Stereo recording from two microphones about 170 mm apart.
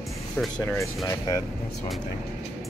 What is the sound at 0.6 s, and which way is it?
Speech, 15° left (ahead or behind).